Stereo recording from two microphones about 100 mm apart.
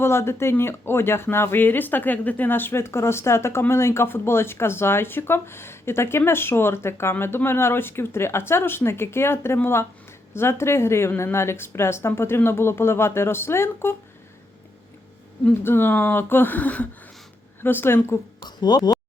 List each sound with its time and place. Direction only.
0.0 s speech: 25° left (ahead or behind)
15.4 s speech: 20° left (ahead or behind)
18.4 s speech: 45° left (ahead or behind)